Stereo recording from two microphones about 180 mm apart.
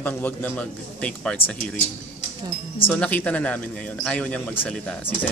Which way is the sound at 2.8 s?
10° left (ahead or behind).